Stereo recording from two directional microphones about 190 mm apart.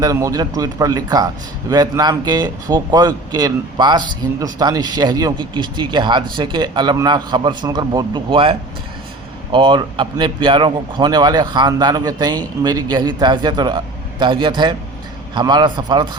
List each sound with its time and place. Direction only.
0.0 s speech: 20° right (ahead or behind)